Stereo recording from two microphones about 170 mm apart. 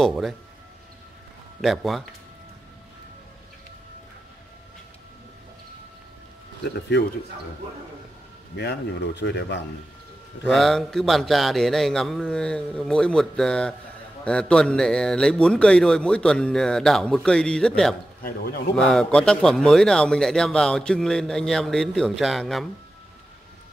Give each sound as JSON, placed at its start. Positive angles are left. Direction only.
{"t": 0.0, "sound": "a man's voice", "side_deg": 0}
{"t": 1.6, "sound": "a man's voice", "side_deg": 0}
{"t": 6.6, "sound": "speech", "side_deg": 90}
{"t": 8.5, "sound": "speech", "side_deg": 85}
{"t": 10.4, "sound": "a man's voice", "side_deg": 0}
{"t": 18.2, "sound": "speech", "side_deg": 65}
{"t": 18.8, "sound": "a man's voice", "side_deg": 5}